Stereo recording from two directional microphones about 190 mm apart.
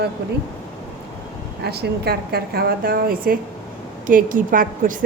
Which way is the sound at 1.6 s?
60° right (ahead or behind).